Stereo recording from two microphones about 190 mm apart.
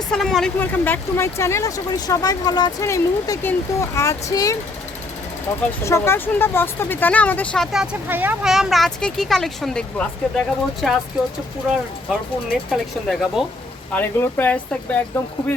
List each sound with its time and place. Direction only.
0.1 s speech: centre (ahead or behind)
12.5 s speech: centre (ahead or behind)
13.9 s speech: 10° left (ahead or behind)